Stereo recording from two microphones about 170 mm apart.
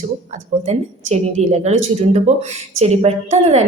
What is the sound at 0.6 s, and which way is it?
A woman's voice, 40° right (ahead or behind).